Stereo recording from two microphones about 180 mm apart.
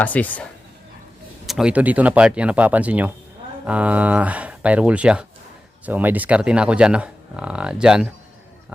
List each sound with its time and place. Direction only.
0.0 s speech: 10° left (ahead or behind)
1.5 s speech: 5° right (ahead or behind)